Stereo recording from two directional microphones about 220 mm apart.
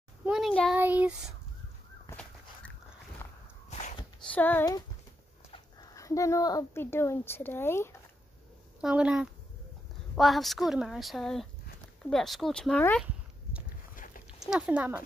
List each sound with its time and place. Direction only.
0.2 s child singing: centre (ahead or behind)
2.0 s dog: 5° left (ahead or behind)
3.2 s walk: 15° left (ahead or behind)
4.3 s speech: 10° left (ahead or behind)
8.8 s speech: 5° right (ahead or behind)
13.9 s dog: 40° left (ahead or behind)
14.4 s speech: 5° right (ahead or behind)